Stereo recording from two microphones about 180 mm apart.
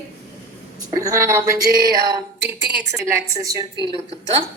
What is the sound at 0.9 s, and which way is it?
A woman's voice, 20° right (ahead or behind).